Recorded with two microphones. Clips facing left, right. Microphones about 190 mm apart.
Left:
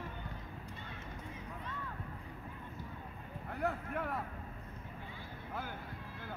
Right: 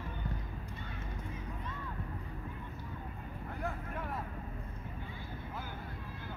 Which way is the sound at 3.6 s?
65° left (ahead or behind).